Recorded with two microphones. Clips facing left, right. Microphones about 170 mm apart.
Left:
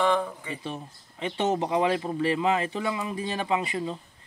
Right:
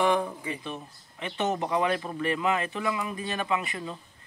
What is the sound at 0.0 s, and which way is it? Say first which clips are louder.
Speech: even; 10° right (ahead or behind).